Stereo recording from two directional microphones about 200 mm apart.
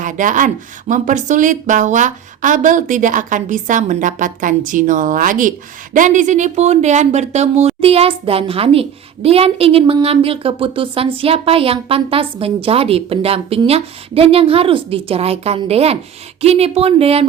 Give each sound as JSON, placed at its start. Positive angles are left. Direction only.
{"t": 0.0, "sound": "a woman's voice", "side_deg": -40}